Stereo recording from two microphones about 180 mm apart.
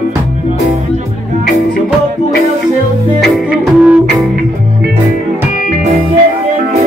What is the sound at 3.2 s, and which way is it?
Music, 5° right (ahead or behind).